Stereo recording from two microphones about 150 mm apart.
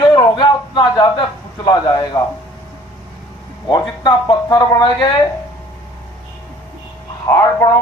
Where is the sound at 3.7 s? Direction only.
30° left (ahead or behind).